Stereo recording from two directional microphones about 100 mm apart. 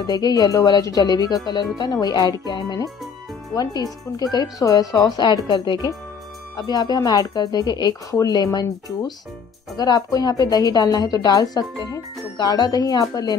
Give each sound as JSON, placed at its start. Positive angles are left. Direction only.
{"t": 0.0, "sound": "speech", "side_deg": 40}
{"t": 2.4, "sound": "music", "side_deg": 45}
{"t": 4.2, "sound": "speech", "side_deg": 40}
{"t": 9.8, "sound": "speech", "side_deg": 40}